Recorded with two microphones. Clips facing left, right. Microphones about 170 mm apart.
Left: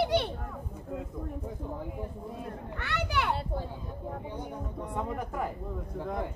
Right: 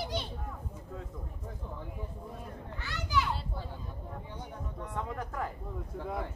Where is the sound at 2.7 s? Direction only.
65° left (ahead or behind).